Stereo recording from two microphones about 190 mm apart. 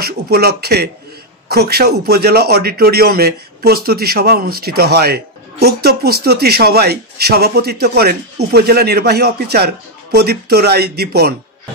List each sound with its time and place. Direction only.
0.0 s speech: 55° right (ahead or behind)